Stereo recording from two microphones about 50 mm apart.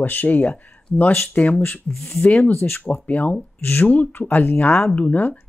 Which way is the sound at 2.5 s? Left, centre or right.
Left.